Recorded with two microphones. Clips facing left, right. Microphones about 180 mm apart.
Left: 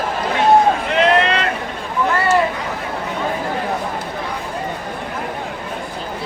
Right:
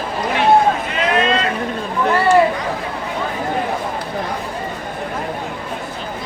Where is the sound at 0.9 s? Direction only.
70° left (ahead or behind).